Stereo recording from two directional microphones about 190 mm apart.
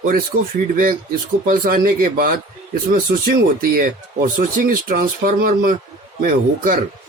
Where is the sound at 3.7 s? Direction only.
45° right (ahead or behind).